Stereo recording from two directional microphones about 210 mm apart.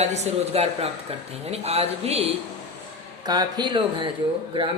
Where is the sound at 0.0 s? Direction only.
30° right (ahead or behind).